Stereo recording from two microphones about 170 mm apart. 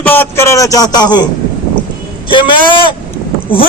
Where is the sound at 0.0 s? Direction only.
10° left (ahead or behind).